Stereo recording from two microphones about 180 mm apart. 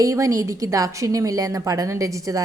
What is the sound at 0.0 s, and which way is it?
A woman's voice, 20° right (ahead or behind).